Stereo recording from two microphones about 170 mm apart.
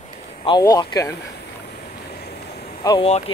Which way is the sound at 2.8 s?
20° left (ahead or behind).